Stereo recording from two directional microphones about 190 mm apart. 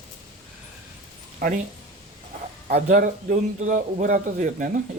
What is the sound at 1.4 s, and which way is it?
Speech, 45° right (ahead or behind).